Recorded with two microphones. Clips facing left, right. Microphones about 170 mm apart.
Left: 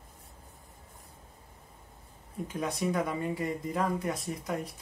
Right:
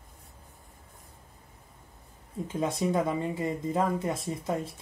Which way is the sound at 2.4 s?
25° right (ahead or behind).